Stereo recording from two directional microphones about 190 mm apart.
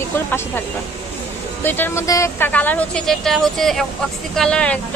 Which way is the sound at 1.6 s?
10° left (ahead or behind).